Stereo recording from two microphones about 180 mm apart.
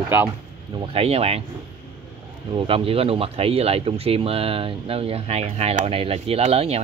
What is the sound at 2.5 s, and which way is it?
Speech, 30° right (ahead or behind).